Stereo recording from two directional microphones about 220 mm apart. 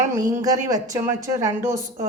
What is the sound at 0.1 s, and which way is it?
A woman's voice, 15° right (ahead or behind).